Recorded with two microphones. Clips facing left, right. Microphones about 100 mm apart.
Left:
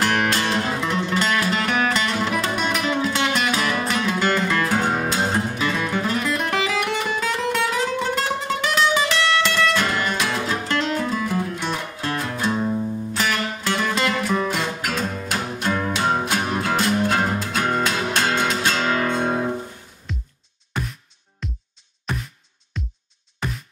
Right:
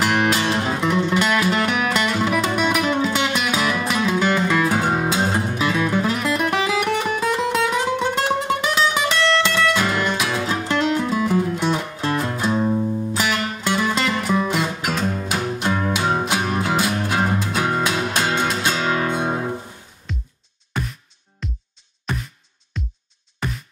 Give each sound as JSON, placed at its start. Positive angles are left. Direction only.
{"t": 0.0, "sound": "music", "side_deg": -10}
{"t": 9.5, "sound": "music", "side_deg": -5}
{"t": 20.1, "sound": "music", "side_deg": 0}